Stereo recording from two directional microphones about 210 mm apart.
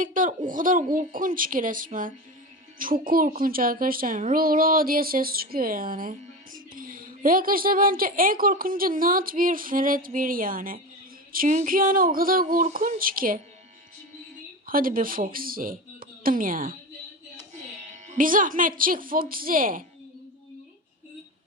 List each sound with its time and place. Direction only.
0.0 s speech: 40° right (ahead or behind)
14.7 s speech: 40° right (ahead or behind)
17.9 s speech: 40° right (ahead or behind)